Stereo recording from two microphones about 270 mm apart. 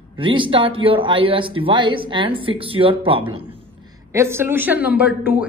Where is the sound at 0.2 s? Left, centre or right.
Centre.